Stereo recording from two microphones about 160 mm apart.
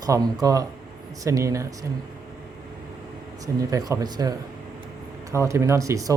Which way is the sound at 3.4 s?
20° right (ahead or behind).